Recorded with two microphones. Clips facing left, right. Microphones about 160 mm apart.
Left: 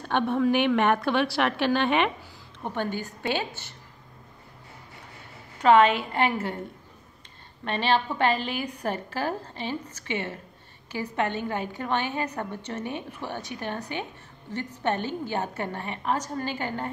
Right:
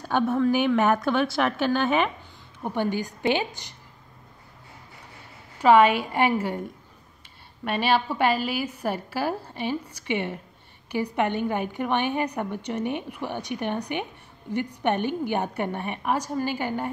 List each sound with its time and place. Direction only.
0.0 s a woman's voice: centre (ahead or behind)
2.6 s a woman's voice: 10° right (ahead or behind)
5.6 s a woman's voice: 10° right (ahead or behind)
7.6 s a woman's voice: 10° right (ahead or behind)